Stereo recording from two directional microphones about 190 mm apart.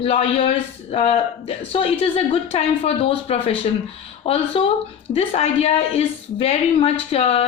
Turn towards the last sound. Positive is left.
turn(degrees=30)  # may be behind; listen again after turning